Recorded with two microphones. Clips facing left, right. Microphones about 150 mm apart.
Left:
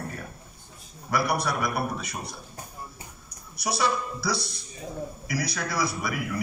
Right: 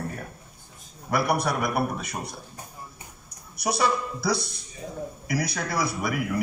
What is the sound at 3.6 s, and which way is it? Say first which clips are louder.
A man's voice: right 2 dB; 50° right (ahead or behind).